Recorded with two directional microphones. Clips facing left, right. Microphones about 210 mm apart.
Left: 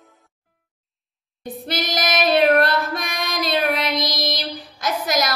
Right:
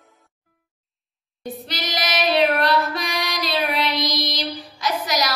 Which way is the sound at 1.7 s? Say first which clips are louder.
Left 5 dB; 50° left (ahead or behind).